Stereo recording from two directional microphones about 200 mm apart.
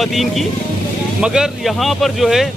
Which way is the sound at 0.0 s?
Centre (ahead or behind).